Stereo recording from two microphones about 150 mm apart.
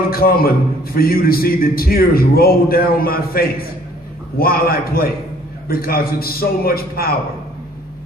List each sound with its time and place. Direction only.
0.1 s a man's voice: 85° left